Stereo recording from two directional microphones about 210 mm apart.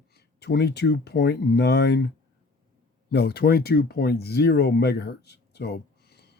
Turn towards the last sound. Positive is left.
turn(degrees=50)  # may be behind; listen again after turning